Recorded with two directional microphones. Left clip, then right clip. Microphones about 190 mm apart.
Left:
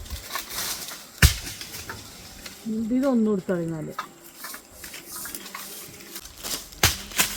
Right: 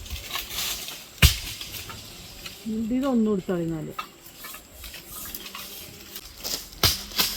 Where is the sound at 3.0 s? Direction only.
25° right (ahead or behind).